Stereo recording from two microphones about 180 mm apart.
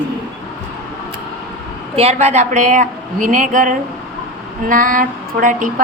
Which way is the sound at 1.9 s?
35° right (ahead or behind).